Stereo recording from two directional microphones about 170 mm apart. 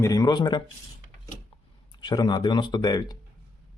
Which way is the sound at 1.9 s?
25° left (ahead or behind).